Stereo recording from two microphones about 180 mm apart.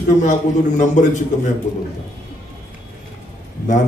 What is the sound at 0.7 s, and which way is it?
Speech, 45° left (ahead or behind).